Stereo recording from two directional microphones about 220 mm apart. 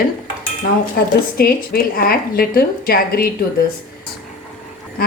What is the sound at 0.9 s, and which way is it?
Speech, 45° left (ahead or behind).